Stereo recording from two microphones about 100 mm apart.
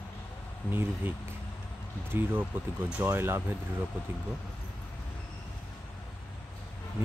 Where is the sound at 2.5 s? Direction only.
20° right (ahead or behind).